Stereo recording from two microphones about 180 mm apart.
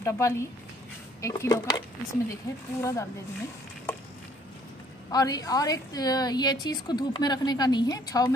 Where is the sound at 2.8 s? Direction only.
20° left (ahead or behind).